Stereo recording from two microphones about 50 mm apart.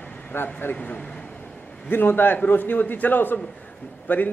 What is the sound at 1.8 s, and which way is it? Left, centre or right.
Speech, left.